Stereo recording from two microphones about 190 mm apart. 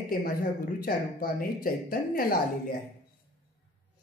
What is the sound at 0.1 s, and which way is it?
Speech, 50° left (ahead or behind).